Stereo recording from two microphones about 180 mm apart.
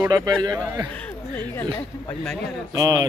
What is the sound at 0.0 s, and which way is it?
Speech, 20° right (ahead or behind).